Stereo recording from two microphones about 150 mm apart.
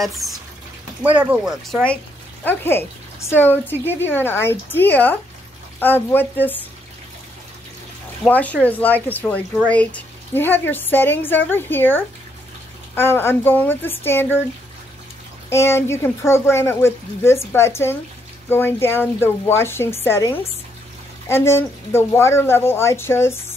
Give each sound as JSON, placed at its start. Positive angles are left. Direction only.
{"t": 0.0, "sound": "speech", "side_deg": 0}
{"t": 1.5, "sound": "speech", "side_deg": 5}
{"t": 8.3, "sound": "speech", "side_deg": 10}
{"t": 15.5, "sound": "speech", "side_deg": 15}